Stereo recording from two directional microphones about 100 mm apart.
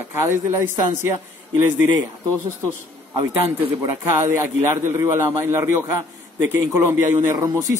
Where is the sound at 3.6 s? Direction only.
25° right (ahead or behind).